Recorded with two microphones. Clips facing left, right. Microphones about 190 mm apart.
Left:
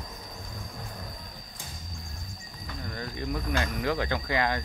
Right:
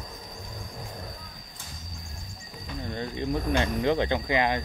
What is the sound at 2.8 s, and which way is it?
Speech, 20° right (ahead or behind).